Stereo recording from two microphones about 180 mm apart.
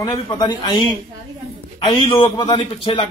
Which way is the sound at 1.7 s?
25° left (ahead or behind).